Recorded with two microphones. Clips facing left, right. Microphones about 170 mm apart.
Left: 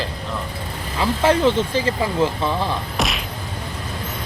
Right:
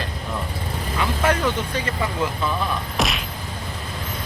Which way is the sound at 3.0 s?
Centre (ahead or behind).